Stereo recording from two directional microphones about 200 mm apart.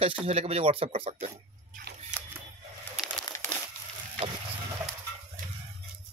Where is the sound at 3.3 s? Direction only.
15° left (ahead or behind).